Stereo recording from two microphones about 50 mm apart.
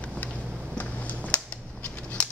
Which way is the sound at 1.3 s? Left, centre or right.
Left.